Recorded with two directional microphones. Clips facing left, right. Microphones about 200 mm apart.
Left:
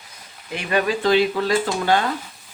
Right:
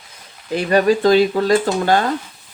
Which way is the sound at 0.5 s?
40° right (ahead or behind).